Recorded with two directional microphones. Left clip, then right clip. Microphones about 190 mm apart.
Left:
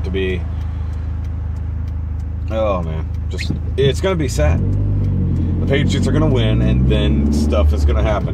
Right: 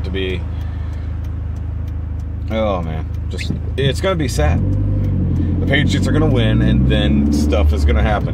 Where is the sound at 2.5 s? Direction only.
20° right (ahead or behind).